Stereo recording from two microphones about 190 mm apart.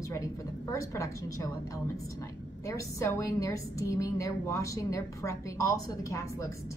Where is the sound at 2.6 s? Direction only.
15° left (ahead or behind).